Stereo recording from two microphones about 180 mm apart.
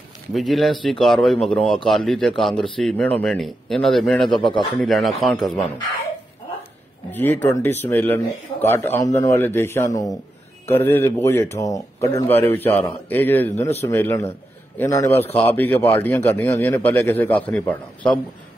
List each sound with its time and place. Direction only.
0.3 s speech: centre (ahead or behind)
7.1 s a man's voice: 10° left (ahead or behind)